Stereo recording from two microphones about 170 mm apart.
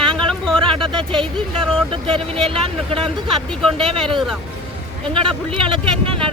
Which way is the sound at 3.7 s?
30° right (ahead or behind).